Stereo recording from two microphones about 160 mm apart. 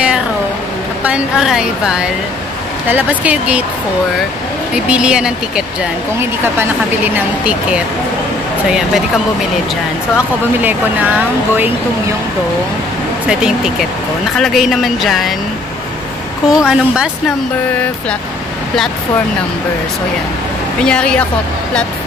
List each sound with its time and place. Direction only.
1.0 s a woman's voice: 5° right (ahead or behind)
4.7 s a woman's voice: 5° right (ahead or behind)
10.1 s speech: 10° right (ahead or behind)
13.3 s a woman's voice: 5° right (ahead or behind)
16.4 s a woman's voice: 5° right (ahead or behind)
20.8 s a woman's voice: 5° left (ahead or behind)